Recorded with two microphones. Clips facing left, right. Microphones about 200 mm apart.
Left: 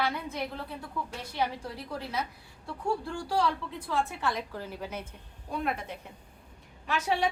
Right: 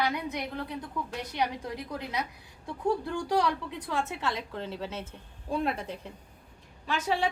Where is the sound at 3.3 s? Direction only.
20° right (ahead or behind).